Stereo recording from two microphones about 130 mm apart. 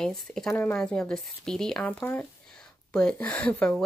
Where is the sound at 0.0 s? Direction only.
5° left (ahead or behind).